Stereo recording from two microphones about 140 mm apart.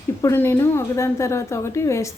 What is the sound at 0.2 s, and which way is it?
A woman's voice, 20° left (ahead or behind).